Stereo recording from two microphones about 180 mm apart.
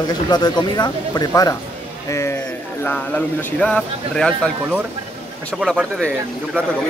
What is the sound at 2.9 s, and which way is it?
A man's voice, 10° left (ahead or behind).